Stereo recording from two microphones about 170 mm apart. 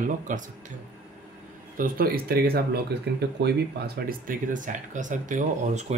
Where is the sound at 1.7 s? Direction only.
55° right (ahead or behind); by 3.2 s 75° right (ahead or behind).